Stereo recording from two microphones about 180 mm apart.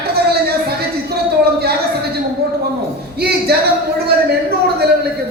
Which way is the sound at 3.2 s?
60° right (ahead or behind).